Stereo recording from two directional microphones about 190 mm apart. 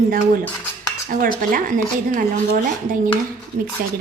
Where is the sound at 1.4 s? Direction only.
45° right (ahead or behind).